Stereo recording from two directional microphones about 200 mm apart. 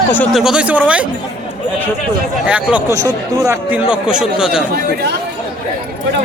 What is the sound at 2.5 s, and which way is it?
Speech, 5° right (ahead or behind).